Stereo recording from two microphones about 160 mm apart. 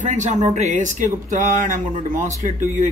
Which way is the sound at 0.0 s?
50° right (ahead or behind).